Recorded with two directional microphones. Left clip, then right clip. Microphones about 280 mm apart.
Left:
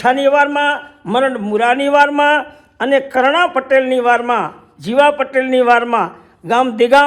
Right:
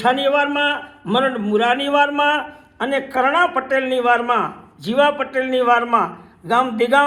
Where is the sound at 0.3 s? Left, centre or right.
Left.